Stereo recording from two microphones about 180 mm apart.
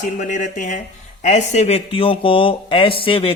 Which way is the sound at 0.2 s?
45° left (ahead or behind).